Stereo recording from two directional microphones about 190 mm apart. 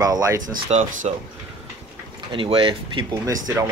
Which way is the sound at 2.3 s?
25° right (ahead or behind).